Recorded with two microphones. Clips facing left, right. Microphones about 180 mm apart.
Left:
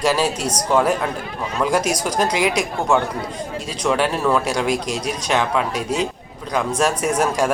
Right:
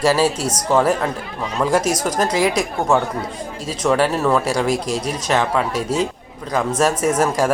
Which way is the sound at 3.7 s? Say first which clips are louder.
Right 3 dB; 5° right (ahead or behind).